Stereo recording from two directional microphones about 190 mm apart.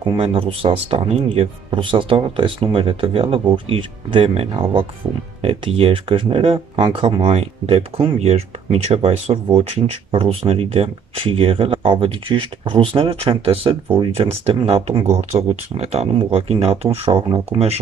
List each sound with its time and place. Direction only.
0.1 s speech: 30° right (ahead or behind)